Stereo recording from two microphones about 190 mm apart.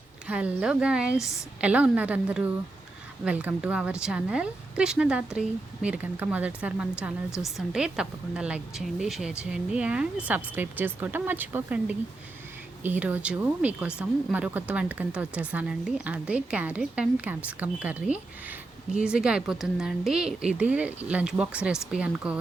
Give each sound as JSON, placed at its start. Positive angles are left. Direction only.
{"t": 0.3, "sound": "a woman's voice", "side_deg": -5}